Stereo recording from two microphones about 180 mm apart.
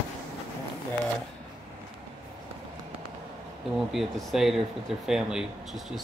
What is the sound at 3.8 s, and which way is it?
Speech, centre (ahead or behind).